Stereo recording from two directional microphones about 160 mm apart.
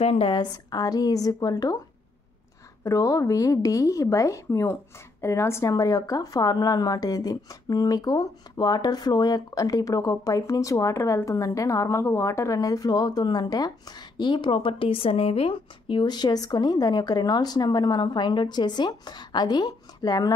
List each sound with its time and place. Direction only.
0.0 s a woman's voice: 35° left (ahead or behind); by 1.8 s 20° left (ahead or behind)
2.8 s a woman's voice: 20° left (ahead or behind)